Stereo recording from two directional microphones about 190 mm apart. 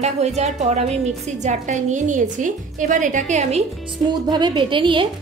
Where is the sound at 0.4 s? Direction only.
35° right (ahead or behind).